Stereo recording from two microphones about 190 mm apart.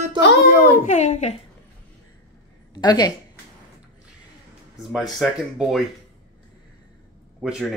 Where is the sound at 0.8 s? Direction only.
40° left (ahead or behind).